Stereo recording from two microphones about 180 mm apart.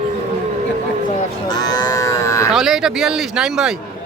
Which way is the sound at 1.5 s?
20° left (ahead or behind).